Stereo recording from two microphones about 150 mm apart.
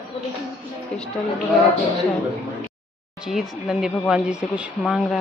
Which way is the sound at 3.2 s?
5° right (ahead or behind).